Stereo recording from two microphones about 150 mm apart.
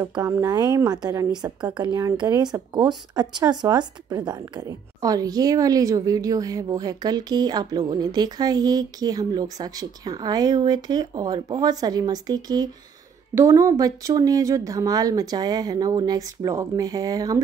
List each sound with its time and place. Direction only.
0.0 s speech: 25° right (ahead or behind)